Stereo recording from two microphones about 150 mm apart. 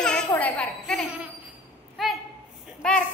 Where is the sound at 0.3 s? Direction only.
10° left (ahead or behind).